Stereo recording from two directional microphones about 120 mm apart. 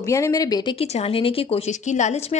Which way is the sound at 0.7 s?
60° left (ahead or behind).